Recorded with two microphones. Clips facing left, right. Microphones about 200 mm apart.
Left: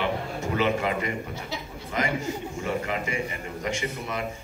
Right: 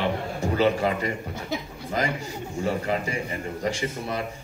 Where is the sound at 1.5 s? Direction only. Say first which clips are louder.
Right 7 dB; 50° right (ahead or behind).